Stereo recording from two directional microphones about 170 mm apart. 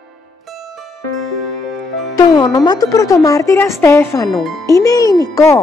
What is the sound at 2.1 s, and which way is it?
A woman's voice, 25° left (ahead or behind).